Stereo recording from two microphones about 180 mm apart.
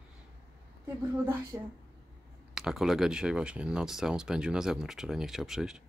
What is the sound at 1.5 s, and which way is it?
Speech, 15° right (ahead or behind).